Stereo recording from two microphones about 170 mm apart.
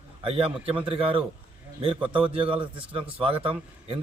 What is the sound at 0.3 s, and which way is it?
Speech, 35° right (ahead or behind).